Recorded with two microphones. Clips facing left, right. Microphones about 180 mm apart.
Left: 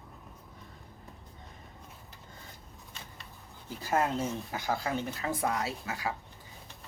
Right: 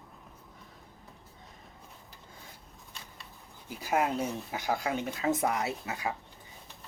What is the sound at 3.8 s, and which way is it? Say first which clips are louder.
Speech: even; 15° right (ahead or behind).